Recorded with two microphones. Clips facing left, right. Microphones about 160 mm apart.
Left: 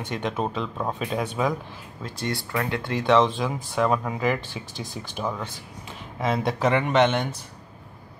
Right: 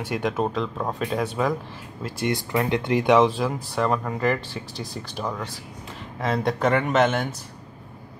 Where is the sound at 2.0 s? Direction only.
15° right (ahead or behind).